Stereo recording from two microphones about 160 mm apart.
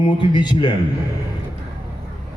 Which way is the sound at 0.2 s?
30° left (ahead or behind).